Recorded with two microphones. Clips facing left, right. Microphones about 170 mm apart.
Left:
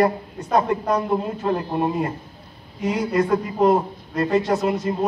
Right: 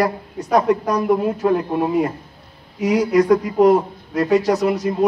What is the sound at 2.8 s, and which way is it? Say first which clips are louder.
A man's voice: right 5 dB; 80° right.